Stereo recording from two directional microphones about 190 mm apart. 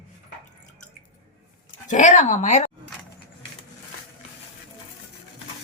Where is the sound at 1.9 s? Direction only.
40° left (ahead or behind).